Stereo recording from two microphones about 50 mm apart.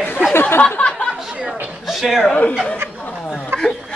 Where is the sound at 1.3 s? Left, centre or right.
Centre.